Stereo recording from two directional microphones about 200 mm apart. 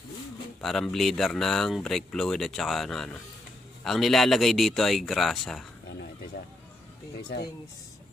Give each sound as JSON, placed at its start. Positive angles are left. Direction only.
{"t": 0.6, "sound": "speech", "side_deg": 0}